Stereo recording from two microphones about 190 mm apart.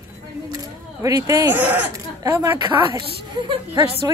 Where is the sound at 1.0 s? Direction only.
15° right (ahead or behind).